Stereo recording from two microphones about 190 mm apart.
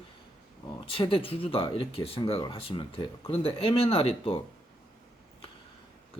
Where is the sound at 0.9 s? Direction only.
30° left (ahead or behind).